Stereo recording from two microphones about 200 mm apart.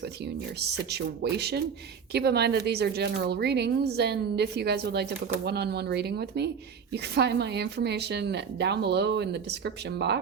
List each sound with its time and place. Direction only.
0.9 s speech: 55° right (ahead or behind)